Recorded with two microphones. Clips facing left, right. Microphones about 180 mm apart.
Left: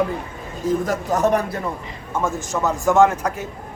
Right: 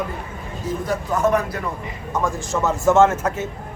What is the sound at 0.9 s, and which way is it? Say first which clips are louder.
Speech: left 1 dB; 40° left (ahead or behind).